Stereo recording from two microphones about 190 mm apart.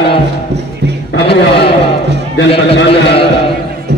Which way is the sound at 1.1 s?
60° left (ahead or behind).